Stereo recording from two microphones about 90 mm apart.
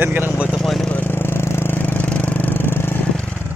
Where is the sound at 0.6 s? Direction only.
5° left (ahead or behind).